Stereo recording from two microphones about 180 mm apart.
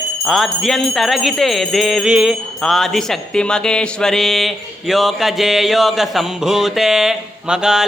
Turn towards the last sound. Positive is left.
turn(degrees=-5)  # may be behind; listen again after turning